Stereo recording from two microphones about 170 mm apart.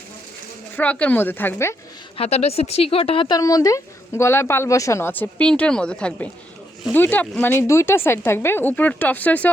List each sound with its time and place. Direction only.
0.8 s speech: 10° left (ahead or behind)
2.1 s speech: 35° left (ahead or behind); by 9.5 s 10° left (ahead or behind)